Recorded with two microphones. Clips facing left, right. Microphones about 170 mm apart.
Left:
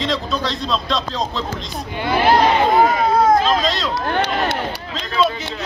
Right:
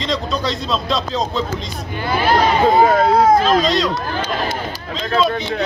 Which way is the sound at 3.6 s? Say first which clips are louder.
Right 4 dB; centre (ahead or behind).